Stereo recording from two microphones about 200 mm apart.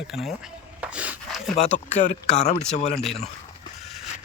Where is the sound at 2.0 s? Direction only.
35° left (ahead or behind).